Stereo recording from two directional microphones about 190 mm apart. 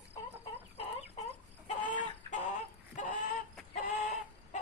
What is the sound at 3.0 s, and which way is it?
Chicken, 40° left (ahead or behind).